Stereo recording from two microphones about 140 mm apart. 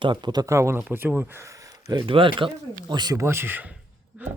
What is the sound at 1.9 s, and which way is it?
Speech, 35° right (ahead or behind).